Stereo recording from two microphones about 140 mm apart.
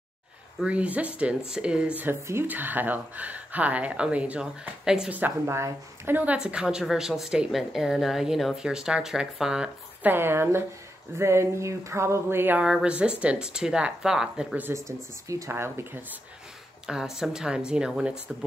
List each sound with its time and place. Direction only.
0.6 s speech: 10° right (ahead or behind)
10.1 s speech: 15° right (ahead or behind)
14.7 s speech: 20° right (ahead or behind)
16.8 s speech: 5° right (ahead or behind)